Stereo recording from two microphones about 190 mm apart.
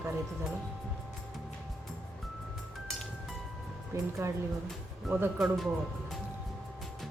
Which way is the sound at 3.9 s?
15° right (ahead or behind).